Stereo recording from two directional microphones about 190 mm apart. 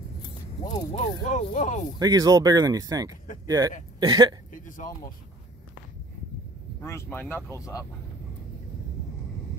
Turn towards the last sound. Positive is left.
turn(degrees=15)  # may be behind; listen again after turning